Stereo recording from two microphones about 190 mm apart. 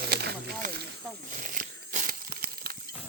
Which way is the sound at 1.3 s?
45° right (ahead or behind).